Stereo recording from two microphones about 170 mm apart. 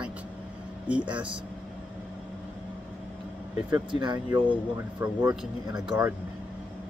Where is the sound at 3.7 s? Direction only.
25° right (ahead or behind).